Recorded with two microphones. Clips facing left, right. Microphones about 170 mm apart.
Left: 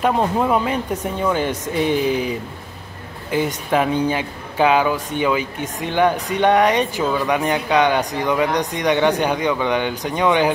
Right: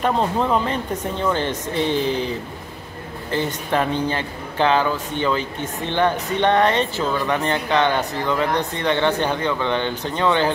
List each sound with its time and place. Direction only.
0.0 s speech: 10° left (ahead or behind)